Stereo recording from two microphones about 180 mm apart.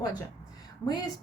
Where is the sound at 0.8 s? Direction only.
20° left (ahead or behind).